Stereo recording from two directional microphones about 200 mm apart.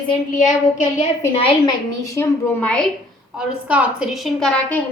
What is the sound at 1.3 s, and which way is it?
Speech, 25° left (ahead or behind).